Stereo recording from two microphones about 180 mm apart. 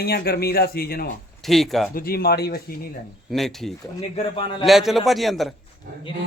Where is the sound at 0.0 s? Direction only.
60° left (ahead or behind).